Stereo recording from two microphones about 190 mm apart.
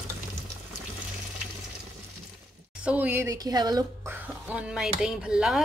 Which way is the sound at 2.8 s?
10° right (ahead or behind).